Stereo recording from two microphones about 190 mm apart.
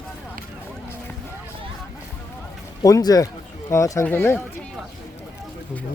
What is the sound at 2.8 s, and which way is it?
Speech, 20° left (ahead or behind).